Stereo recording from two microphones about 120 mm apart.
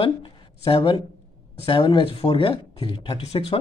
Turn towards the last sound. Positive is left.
turn(degrees=55)  # may be behind; listen again after turning